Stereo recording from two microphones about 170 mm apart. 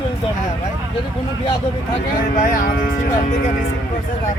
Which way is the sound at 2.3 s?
55° left (ahead or behind).